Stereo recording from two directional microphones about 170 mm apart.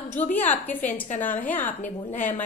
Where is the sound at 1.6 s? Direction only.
50° left (ahead or behind).